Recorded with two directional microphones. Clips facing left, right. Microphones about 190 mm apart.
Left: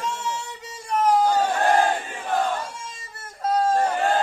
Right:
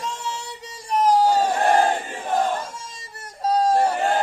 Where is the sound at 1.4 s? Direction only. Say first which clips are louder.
Right 1 dB; 15° right (ahead or behind).